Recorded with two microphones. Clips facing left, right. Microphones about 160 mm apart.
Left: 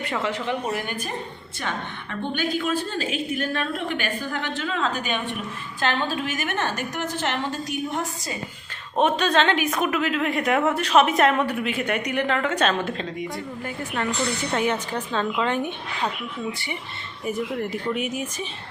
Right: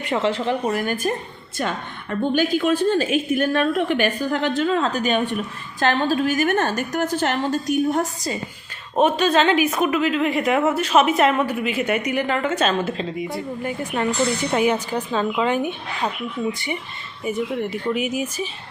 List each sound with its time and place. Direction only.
0.0 s speech: 25° right (ahead or behind)
0.7 s a woman's voice: 45° right (ahead or behind)
9.0 s a woman's voice: 5° right (ahead or behind)
13.2 s a woman's voice: 20° right (ahead or behind)
16.5 s speech: 20° right (ahead or behind)
17.2 s a woman's voice: centre (ahead or behind)